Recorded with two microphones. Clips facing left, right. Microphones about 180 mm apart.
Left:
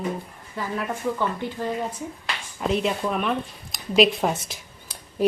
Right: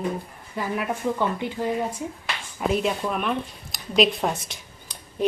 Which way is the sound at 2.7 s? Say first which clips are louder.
Left 1 dB; centre (ahead or behind).